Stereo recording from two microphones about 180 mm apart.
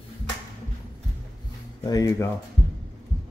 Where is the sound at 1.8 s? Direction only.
20° left (ahead or behind).